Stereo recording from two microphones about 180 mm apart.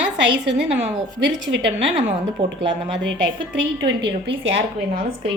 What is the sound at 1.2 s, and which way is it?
Speech, 80° right.